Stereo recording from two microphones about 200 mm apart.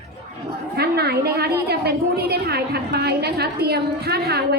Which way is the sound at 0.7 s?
50° right (ahead or behind).